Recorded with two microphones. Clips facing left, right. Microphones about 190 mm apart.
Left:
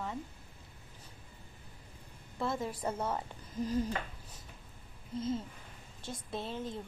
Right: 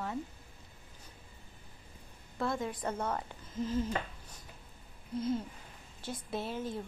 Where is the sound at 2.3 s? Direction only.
5° left (ahead or behind).